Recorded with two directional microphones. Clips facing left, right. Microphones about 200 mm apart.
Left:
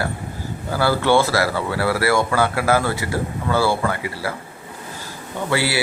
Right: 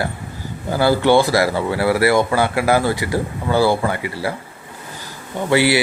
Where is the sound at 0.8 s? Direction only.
15° right (ahead or behind).